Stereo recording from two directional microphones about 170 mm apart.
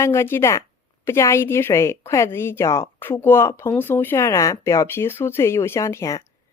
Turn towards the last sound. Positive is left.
turn(degrees=15)  # may be behind; listen again after turning